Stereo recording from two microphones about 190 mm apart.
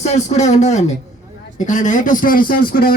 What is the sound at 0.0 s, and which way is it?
Speech, 35° left (ahead or behind).